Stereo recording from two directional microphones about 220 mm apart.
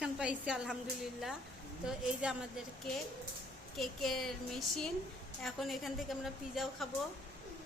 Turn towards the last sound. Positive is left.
turn(degrees=0)  # may be behind; listen again after turning